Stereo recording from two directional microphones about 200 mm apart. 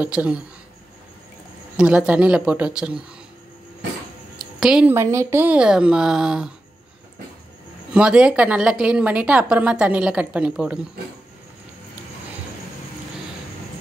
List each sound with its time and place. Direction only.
0.0 s speech: 5° right (ahead or behind)
1.8 s a woman's voice: 5° right (ahead or behind)
4.4 s a woman's voice: 5° right (ahead or behind)
7.9 s a woman's voice: 5° right (ahead or behind)